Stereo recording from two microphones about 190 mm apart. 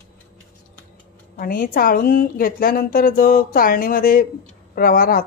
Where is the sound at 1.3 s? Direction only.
50° left (ahead or behind).